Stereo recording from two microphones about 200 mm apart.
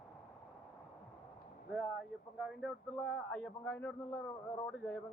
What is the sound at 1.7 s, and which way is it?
A man's voice, centre (ahead or behind).